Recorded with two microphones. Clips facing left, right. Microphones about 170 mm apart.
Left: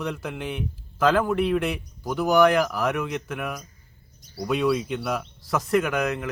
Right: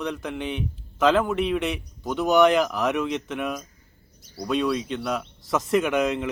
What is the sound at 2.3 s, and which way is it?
Speech, 20° right (ahead or behind).